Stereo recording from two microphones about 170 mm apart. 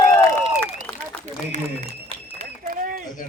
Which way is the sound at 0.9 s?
5° left (ahead or behind).